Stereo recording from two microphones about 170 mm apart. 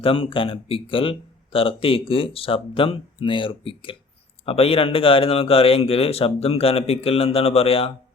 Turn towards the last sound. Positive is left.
turn(degrees=35)  # may be behind; listen again after turning